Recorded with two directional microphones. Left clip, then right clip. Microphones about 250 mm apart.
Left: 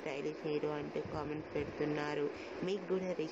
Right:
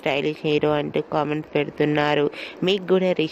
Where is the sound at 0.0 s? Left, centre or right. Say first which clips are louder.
Right 17 dB; right.